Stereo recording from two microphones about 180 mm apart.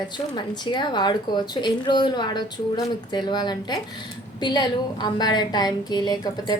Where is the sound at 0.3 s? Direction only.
25° left (ahead or behind).